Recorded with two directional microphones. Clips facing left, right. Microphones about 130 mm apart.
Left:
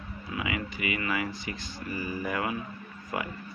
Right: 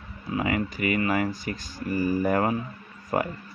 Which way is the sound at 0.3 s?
40° right (ahead or behind).